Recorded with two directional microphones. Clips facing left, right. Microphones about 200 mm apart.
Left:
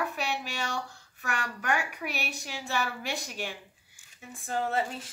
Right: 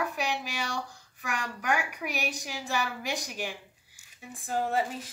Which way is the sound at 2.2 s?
15° right (ahead or behind).